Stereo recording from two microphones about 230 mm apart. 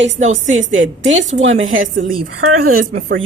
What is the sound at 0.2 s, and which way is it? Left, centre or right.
Speech, right.